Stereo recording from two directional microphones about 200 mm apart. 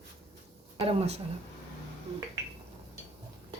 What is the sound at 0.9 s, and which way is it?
Speech, 30° right (ahead or behind).